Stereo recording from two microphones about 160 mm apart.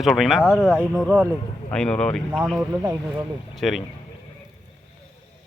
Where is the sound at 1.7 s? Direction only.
5° left (ahead or behind).